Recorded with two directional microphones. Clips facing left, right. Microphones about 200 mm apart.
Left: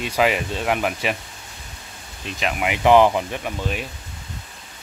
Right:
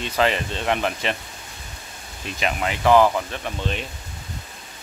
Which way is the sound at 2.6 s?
15° left (ahead or behind).